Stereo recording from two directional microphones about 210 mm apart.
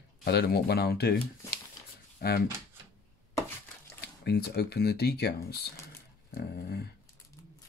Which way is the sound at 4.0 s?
50° left (ahead or behind).